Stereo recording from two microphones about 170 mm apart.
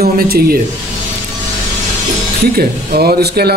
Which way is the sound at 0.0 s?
60° right (ahead or behind).